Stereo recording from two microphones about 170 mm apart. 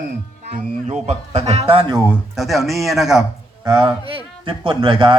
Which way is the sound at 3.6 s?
25° right (ahead or behind).